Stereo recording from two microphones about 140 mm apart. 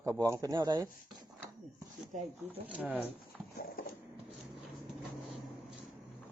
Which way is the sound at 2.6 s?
10° right (ahead or behind).